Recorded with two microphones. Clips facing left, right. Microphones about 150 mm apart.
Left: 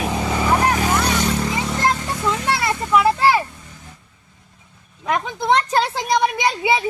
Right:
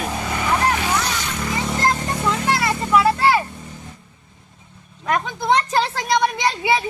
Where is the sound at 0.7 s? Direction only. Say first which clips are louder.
Left 3 dB; 40° left (ahead or behind).